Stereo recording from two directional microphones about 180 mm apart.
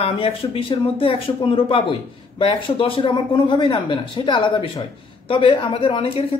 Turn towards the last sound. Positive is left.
turn(degrees=30)  # may be behind; listen again after turning